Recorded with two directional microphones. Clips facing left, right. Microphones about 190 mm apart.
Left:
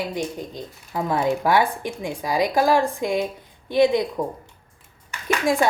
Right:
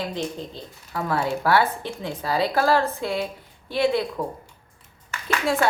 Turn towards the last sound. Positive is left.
turn(degrees=15)  # may be behind; listen again after turning